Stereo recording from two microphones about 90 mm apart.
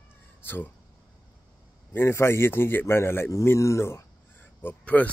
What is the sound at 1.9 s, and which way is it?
A man's voice, 25° left (ahead or behind).